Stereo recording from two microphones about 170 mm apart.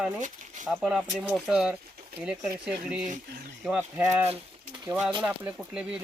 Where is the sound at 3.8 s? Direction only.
15° right (ahead or behind).